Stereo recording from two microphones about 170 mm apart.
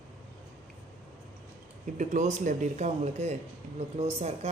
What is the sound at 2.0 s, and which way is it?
A woman's voice, 45° right (ahead or behind).